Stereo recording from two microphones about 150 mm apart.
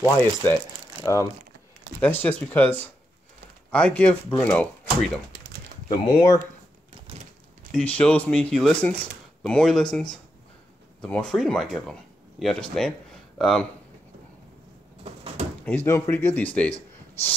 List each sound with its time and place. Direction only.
0.0 s speech: 15° left (ahead or behind)
2.0 s speech: 10° left (ahead or behind)
3.7 s speech: 10° left (ahead or behind)
5.9 s speech: 25° left (ahead or behind)
7.7 s speech: 10° left (ahead or behind)
15.0 s bird: 40° right (ahead or behind)
15.6 s speech: 15° left (ahead or behind)